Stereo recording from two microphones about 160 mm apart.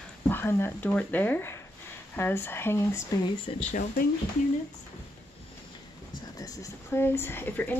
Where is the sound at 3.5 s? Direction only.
35° left (ahead or behind).